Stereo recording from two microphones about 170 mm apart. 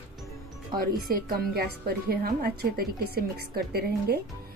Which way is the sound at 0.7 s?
60° right (ahead or behind).